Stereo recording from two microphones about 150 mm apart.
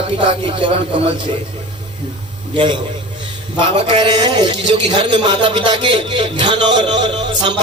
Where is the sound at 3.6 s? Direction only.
35° right (ahead or behind).